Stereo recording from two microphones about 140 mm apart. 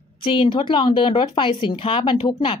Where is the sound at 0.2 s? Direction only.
35° left (ahead or behind).